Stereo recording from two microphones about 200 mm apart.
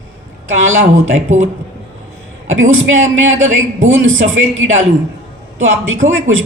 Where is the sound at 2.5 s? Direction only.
80° right.